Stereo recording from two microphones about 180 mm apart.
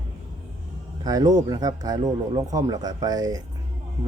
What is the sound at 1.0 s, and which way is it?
Speech, 20° right (ahead or behind).